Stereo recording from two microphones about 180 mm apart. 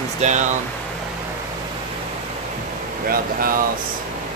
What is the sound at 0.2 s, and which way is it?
Speech, 40° right (ahead or behind).